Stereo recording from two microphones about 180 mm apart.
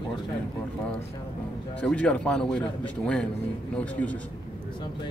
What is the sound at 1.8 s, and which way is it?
Speech, 5° left (ahead or behind).